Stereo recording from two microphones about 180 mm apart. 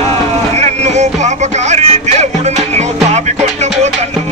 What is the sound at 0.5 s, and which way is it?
Music, 40° right (ahead or behind).